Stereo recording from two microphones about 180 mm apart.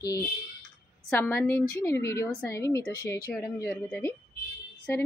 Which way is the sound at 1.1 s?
15° left (ahead or behind).